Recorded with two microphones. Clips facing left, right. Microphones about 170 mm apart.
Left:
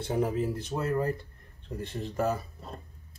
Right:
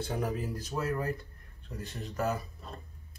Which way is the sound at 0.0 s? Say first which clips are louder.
Left 5 dB; 25° left (ahead or behind).